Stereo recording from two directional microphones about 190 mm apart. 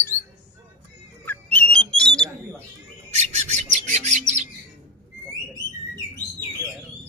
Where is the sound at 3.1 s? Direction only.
35° right (ahead or behind).